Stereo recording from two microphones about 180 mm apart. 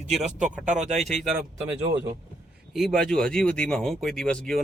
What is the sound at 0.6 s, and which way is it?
Speech, 40° right (ahead or behind).